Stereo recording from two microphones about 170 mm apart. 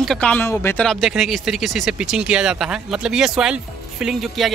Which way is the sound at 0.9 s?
Centre (ahead or behind).